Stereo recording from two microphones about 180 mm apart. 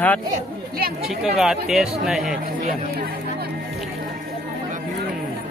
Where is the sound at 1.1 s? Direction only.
5° right (ahead or behind).